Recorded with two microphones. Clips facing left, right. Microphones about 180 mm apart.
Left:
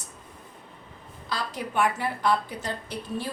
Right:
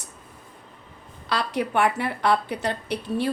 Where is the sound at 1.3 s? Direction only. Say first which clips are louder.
Right 6 dB; 70° right (ahead or behind).